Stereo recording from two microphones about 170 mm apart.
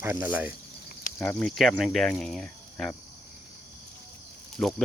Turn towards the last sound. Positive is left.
turn(degrees=0)  # may be behind; listen again after turning